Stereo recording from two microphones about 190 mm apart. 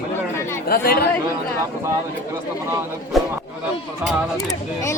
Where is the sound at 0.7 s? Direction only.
55° left (ahead or behind).